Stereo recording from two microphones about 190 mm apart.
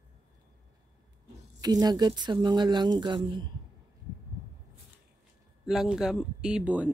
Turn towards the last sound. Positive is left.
turn(degrees=-5)  # may be behind; listen again after turning